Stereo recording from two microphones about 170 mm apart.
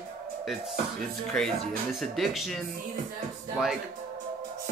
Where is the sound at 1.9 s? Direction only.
Centre (ahead or behind).